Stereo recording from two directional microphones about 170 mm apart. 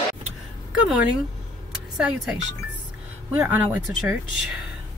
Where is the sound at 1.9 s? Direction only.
5° right (ahead or behind).